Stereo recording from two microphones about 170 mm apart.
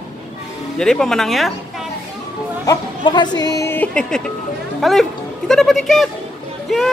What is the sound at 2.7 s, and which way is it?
Speech, 25° left (ahead or behind).